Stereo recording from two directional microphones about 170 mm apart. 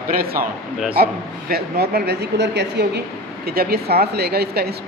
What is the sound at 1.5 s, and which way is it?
Speech, 65° right (ahead or behind).